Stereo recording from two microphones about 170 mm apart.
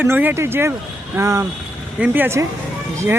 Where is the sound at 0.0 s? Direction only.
10° right (ahead or behind).